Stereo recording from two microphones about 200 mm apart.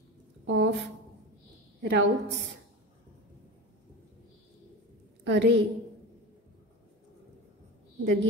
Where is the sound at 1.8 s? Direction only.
60° right (ahead or behind).